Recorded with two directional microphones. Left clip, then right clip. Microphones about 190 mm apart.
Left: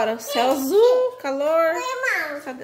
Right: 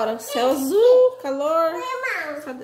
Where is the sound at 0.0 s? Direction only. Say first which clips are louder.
Left 1 dB; 10° right (ahead or behind).